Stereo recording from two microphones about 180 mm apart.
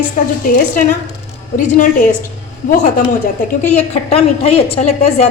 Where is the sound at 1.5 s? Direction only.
50° left (ahead or behind).